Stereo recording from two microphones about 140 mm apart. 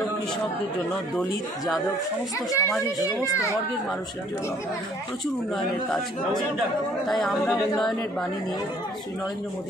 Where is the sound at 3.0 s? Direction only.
25° left (ahead or behind).